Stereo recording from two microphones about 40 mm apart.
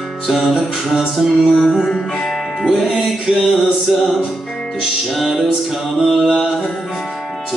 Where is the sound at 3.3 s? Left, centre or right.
Centre.